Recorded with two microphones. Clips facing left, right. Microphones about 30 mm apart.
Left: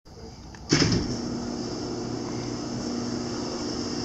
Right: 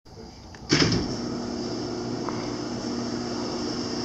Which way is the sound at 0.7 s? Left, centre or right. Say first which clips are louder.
Right 1 dB; centre.